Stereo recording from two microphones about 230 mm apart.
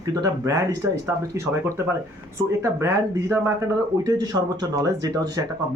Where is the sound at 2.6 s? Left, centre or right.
Centre.